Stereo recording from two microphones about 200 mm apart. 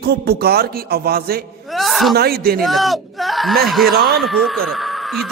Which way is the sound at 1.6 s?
Centre (ahead or behind).